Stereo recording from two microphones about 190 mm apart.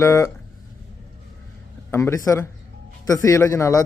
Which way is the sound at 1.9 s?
15° left (ahead or behind).